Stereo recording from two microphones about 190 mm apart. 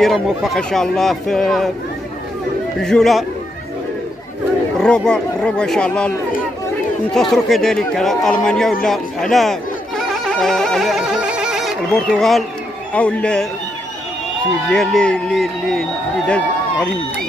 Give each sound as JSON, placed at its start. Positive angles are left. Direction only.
{"t": 0.0, "sound": "a man's voice", "side_deg": 0}
{"t": 2.8, "sound": "a man's voice", "side_deg": 0}
{"t": 4.7, "sound": "a man's voice", "side_deg": 5}
{"t": 14.7, "sound": "a man's voice", "side_deg": 5}